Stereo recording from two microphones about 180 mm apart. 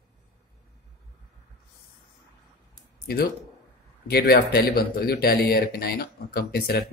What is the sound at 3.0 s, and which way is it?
Speech, 60° left (ahead or behind).